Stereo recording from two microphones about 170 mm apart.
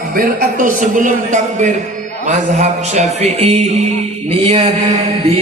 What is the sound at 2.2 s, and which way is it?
Speech, 45° right (ahead or behind).